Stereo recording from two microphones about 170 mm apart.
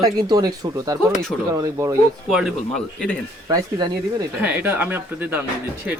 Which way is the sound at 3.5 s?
20° right (ahead or behind).